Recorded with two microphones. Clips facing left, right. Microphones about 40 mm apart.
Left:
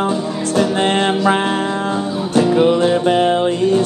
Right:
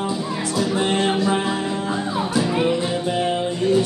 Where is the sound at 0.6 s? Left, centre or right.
Left.